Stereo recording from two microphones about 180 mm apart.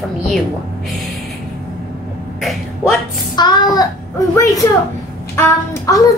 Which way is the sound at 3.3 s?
25° left (ahead or behind).